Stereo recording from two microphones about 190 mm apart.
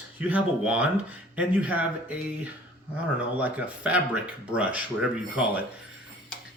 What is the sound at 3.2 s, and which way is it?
Speech, 5° right (ahead or behind).